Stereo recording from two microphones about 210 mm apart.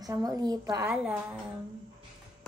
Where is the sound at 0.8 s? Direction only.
5° right (ahead or behind).